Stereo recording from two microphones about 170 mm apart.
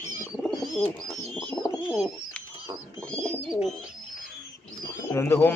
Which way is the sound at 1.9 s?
5° left (ahead or behind).